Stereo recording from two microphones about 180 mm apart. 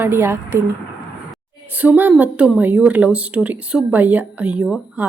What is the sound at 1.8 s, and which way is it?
Speech, 10° right (ahead or behind).